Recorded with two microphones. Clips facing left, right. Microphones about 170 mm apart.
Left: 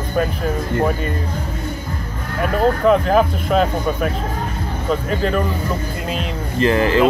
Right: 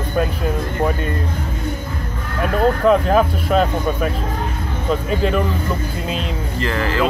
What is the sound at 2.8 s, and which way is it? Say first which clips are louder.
Speech: even; centre (ahead or behind).